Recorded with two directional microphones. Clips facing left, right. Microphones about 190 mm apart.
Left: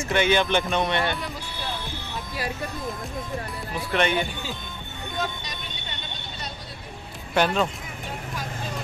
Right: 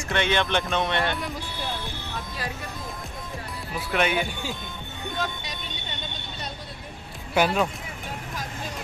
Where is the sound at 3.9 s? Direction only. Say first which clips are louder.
Left 1 dB; 5° right (ahead or behind).